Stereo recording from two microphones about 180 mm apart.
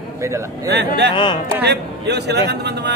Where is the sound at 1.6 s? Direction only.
65° right (ahead or behind).